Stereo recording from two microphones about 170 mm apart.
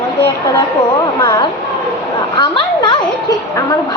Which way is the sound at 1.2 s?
20° left (ahead or behind).